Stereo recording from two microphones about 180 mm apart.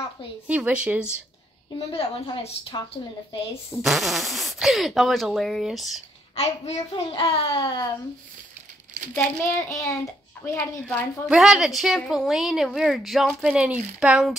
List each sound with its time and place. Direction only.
0.5 s speech: 5° right (ahead or behind)
1.8 s a woman's voice: 30° left (ahead or behind)
3.8 s a woman's voice: centre (ahead or behind)
6.3 s a child's voice: 35° left (ahead or behind)
9.1 s a child's voice: 15° left (ahead or behind)
11.2 s a woman's voice: 5° right (ahead or behind)